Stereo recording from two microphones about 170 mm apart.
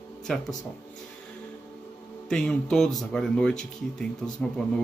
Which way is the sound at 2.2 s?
5° left (ahead or behind).